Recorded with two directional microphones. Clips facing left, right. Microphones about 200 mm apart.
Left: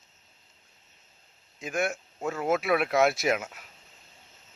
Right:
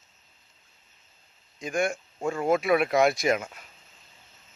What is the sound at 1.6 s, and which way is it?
A man's voice, 5° left (ahead or behind).